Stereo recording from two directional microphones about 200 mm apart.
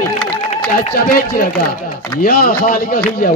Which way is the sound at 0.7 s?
45° left (ahead or behind).